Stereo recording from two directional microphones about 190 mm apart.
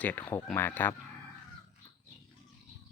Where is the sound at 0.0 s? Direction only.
10° left (ahead or behind).